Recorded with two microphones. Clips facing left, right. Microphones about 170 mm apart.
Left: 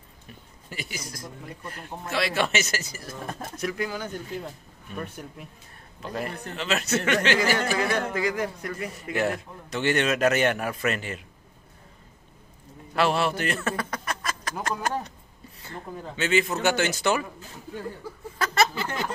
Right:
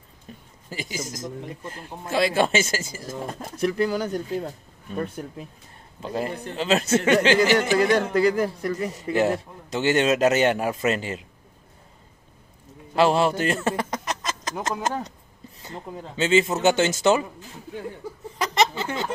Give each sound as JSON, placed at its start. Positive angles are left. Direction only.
{"t": 0.7, "sound": "a man's voice", "side_deg": -25}
{"t": 12.9, "sound": "a man's voice", "side_deg": -25}
{"t": 18.4, "sound": "a sound", "side_deg": -15}